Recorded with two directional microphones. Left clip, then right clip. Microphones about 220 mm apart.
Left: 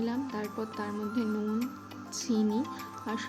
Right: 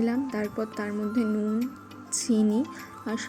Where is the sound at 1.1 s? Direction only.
Centre (ahead or behind).